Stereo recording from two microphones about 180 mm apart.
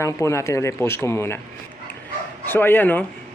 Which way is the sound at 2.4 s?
10° left (ahead or behind).